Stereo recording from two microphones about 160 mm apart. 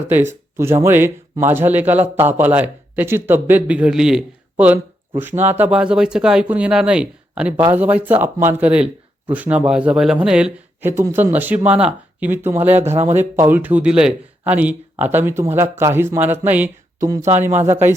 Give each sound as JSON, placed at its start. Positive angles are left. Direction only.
{"t": 0.1, "sound": "speech", "side_deg": -15}
{"t": 12.9, "sound": "speech", "side_deg": -45}
{"t": 13.1, "sound": "speech", "side_deg": -15}